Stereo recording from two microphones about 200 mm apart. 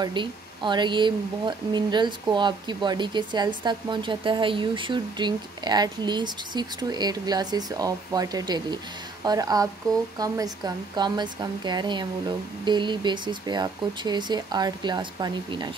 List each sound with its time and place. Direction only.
0.0 s speech: 25° right (ahead or behind)